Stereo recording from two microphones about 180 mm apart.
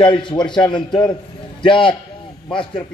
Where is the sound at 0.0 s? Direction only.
25° left (ahead or behind).